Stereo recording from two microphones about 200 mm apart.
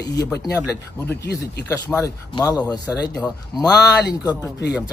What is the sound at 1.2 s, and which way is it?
Speech, 55° left (ahead or behind).